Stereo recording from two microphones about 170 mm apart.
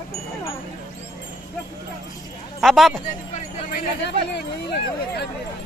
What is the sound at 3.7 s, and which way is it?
Speech, 75° left (ahead or behind).